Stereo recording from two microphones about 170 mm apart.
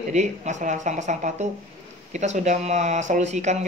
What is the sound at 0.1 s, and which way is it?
A woman's voice, 45° right (ahead or behind).